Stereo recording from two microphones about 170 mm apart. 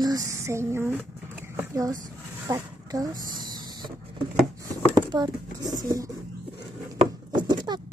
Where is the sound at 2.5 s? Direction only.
20° right (ahead or behind).